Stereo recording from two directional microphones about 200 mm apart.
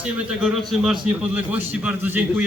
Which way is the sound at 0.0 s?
5° right (ahead or behind).